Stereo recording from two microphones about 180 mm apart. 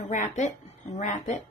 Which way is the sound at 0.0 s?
45° left (ahead or behind).